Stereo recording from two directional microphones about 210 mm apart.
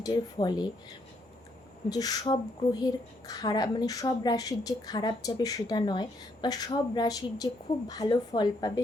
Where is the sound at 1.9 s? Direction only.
20° left (ahead or behind).